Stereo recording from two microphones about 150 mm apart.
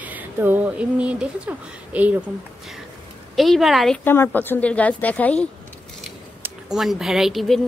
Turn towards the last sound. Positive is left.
turn(degrees=0)  # may be behind; listen again after turning